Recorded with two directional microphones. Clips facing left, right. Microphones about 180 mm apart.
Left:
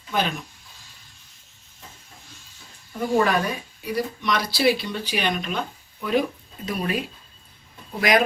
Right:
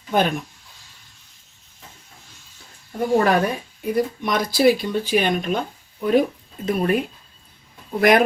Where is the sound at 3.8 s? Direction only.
50° right (ahead or behind).